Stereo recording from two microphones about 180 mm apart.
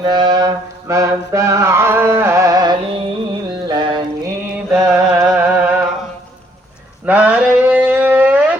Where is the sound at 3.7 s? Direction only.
25° right (ahead or behind).